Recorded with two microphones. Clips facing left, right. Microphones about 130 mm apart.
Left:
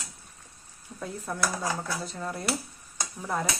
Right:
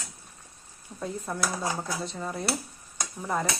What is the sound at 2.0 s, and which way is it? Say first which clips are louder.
Speech: right 2 dB; centre (ahead or behind).